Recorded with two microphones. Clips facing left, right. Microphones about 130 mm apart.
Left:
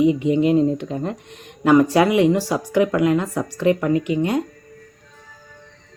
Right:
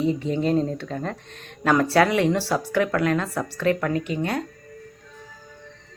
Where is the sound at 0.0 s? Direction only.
15° left (ahead or behind).